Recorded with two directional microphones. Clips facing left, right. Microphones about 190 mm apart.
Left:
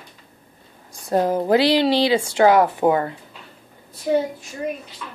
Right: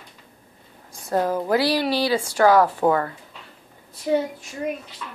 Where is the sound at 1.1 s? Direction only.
20° left (ahead or behind).